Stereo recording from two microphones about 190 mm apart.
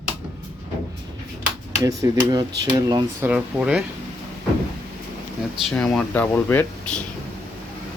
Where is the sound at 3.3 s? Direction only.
5° right (ahead or behind).